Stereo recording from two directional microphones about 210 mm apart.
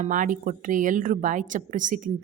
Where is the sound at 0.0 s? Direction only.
40° right (ahead or behind).